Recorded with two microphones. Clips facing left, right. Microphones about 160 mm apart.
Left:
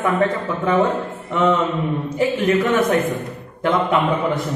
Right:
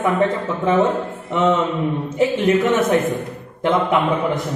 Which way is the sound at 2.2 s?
25° right (ahead or behind).